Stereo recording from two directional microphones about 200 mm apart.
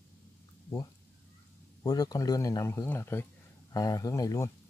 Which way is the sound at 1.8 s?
20° left (ahead or behind).